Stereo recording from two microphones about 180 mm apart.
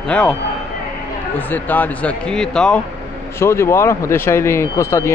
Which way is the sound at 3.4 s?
15° left (ahead or behind).